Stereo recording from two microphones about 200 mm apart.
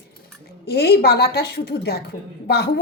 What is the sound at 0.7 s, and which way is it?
A woman's voice, 55° left (ahead or behind).